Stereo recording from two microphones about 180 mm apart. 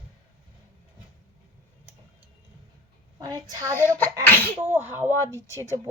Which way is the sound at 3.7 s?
10° left (ahead or behind).